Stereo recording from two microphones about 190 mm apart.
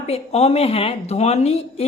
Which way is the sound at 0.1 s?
35° left (ahead or behind).